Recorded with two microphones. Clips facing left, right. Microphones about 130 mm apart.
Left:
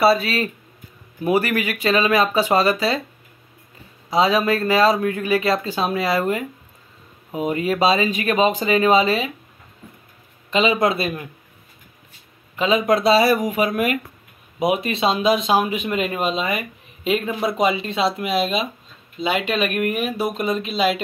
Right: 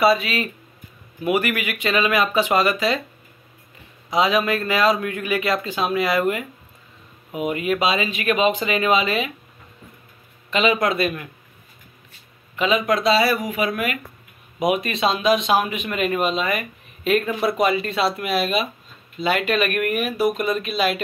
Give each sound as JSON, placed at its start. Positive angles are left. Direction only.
{"t": 0.0, "sound": "speech", "side_deg": 35}
{"t": 4.1, "sound": "speech", "side_deg": 30}
{"t": 10.5, "sound": "speech", "side_deg": 30}
{"t": 12.5, "sound": "speech", "side_deg": 30}
{"t": 14.6, "sound": "speech", "side_deg": 30}